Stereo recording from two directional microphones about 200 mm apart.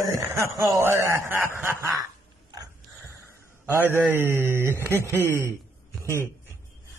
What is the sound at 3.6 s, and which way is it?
A man's voice, 10° right (ahead or behind).